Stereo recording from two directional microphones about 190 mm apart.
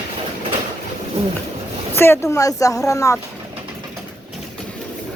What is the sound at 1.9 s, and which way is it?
Speech, 10° left (ahead or behind).